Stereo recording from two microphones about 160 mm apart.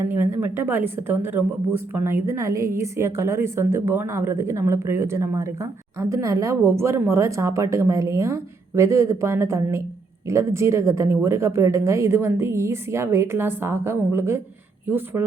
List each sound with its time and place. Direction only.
0.0 s a woman's voice: 15° right (ahead or behind)